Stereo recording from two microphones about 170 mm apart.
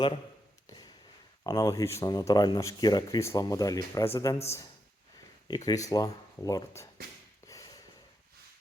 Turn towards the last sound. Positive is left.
turn(degrees=20)  # may be behind; listen again after turning